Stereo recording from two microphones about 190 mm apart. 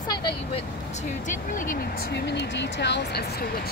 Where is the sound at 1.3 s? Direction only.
45° left (ahead or behind).